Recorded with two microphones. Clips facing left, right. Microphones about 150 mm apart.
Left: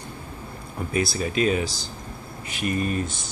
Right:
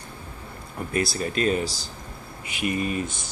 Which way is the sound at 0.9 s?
5° left (ahead or behind).